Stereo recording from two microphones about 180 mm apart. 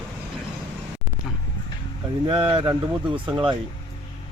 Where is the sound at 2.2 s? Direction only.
30° right (ahead or behind).